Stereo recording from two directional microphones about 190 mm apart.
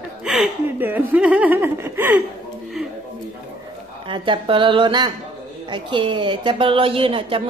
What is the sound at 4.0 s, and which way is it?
Speech, 25° right (ahead or behind).